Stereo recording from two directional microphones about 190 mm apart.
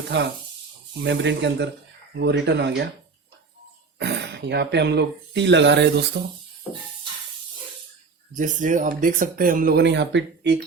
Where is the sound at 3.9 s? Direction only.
60° right (ahead or behind).